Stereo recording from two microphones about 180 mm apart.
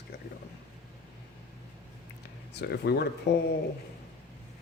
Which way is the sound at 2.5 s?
65° left (ahead or behind).